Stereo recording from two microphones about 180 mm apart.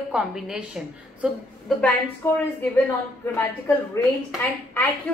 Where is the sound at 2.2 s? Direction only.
15° left (ahead or behind).